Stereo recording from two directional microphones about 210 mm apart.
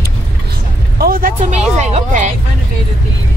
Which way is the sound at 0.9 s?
45° right (ahead or behind).